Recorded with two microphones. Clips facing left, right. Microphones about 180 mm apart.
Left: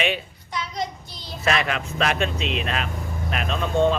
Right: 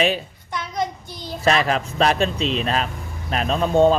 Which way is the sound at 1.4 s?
35° right (ahead or behind).